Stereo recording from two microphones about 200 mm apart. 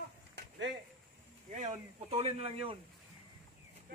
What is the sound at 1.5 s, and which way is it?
Speech, 35° right (ahead or behind).